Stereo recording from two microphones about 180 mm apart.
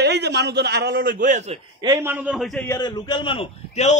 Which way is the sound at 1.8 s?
15° right (ahead or behind).